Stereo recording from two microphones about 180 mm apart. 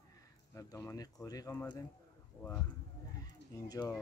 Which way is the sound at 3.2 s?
20° left (ahead or behind).